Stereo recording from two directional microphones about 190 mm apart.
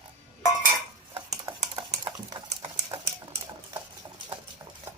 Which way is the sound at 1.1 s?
25° right (ahead or behind).